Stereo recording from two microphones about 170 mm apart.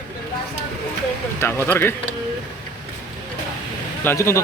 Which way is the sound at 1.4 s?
15° left (ahead or behind).